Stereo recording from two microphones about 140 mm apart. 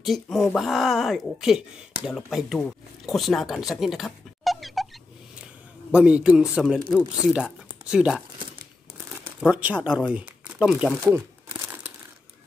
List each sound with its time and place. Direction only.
0.0 s speech: centre (ahead or behind)
5.9 s speech: 10° right (ahead or behind)
9.5 s speech: 10° right (ahead or behind)
11.0 s speech: 25° right (ahead or behind)